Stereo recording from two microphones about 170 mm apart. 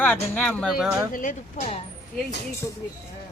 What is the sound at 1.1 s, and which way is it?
Speech, 50° left (ahead or behind).